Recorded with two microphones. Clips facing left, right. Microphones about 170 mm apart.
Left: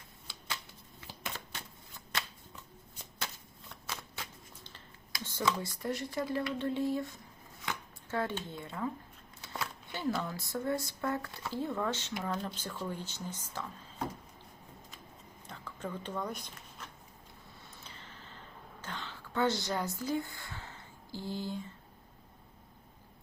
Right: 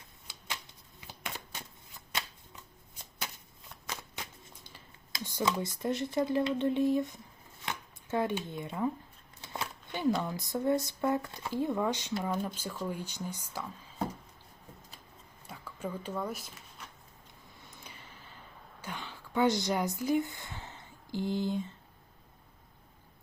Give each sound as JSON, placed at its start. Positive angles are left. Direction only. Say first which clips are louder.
{"t": 0.3, "sound": "shuffling cards", "louder": "even", "side_deg": -15}
{"t": 1.0, "sound": "a sound", "louder": "even", "side_deg": -15}
{"t": 3.8, "sound": "shuffling cards", "louder": "right 1 dB", "side_deg": -15}
{"t": 5.2, "sound": "speech", "louder": "right 2 dB", "side_deg": -15}
{"t": 9.4, "sound": "shuffling cards", "louder": "right 1 dB", "side_deg": -20}
{"t": 10.2, "sound": "speech", "louder": "right 3 dB", "side_deg": -20}
{"t": 15.4, "sound": "speech", "louder": "right 2 dB", "side_deg": -10}
{"t": 17.8, "sound": "a sound", "louder": "even", "side_deg": -10}